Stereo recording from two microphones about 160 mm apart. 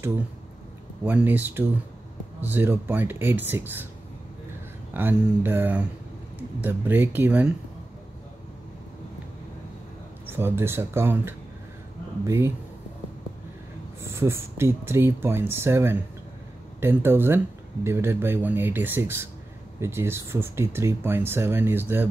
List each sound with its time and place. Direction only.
1.0 s speech: 10° right (ahead or behind)
4.9 s speech: 10° right (ahead or behind)
10.2 s speech: 15° right (ahead or behind)
14.1 s speech: 15° right (ahead or behind)